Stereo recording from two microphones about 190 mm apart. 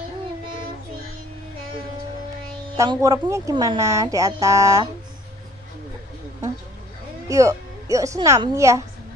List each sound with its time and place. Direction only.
2.8 s speech: 20° right (ahead or behind)
7.2 s speech: 15° right (ahead or behind)